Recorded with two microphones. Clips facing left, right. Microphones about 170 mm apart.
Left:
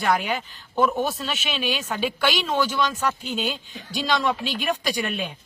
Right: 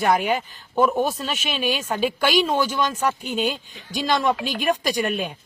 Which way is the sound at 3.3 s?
45° right (ahead or behind).